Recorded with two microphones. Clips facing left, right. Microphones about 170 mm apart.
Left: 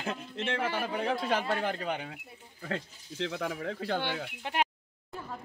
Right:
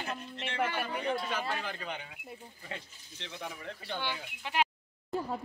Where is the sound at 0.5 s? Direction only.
90° left.